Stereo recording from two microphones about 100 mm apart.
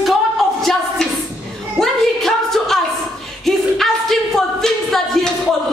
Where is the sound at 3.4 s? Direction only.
Centre (ahead or behind).